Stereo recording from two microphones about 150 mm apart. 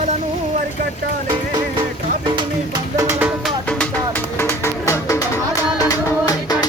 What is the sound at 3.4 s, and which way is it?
Music, 5° left (ahead or behind).